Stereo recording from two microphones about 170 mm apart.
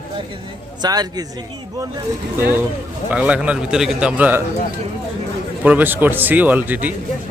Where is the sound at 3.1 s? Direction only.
5° right (ahead or behind).